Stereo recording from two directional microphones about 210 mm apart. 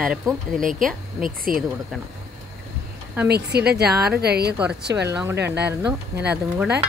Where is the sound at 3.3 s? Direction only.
50° right (ahead or behind).